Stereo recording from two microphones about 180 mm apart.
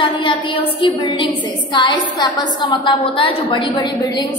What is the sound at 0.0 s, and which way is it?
A woman's voice, 30° left (ahead or behind).